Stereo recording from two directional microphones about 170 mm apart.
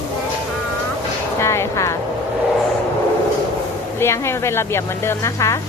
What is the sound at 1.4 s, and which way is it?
Speech, 15° left (ahead or behind).